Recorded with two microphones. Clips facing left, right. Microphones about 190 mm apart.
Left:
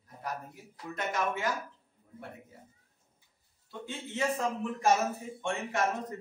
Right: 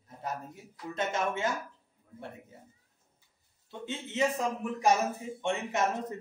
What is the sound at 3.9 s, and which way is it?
A man's voice, 20° right (ahead or behind).